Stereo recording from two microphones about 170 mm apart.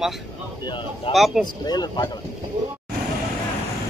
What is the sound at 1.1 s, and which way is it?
Speech, centre (ahead or behind).